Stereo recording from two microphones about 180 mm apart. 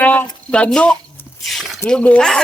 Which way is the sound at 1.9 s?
5° left (ahead or behind).